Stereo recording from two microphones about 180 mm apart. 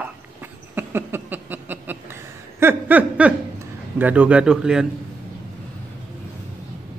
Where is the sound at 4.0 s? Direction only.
10° right (ahead or behind).